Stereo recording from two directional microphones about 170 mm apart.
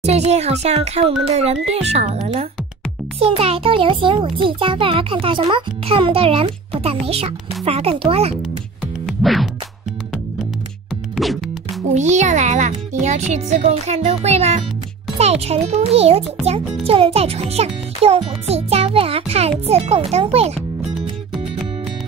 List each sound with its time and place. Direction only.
0.0 s a child's voice: 40° right (ahead or behind)
9.0 s music: centre (ahead or behind)
11.9 s a child's voice: 45° right (ahead or behind)